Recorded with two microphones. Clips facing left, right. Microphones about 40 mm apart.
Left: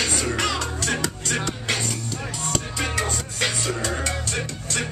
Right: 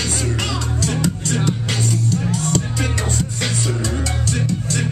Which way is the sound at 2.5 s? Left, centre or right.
Centre.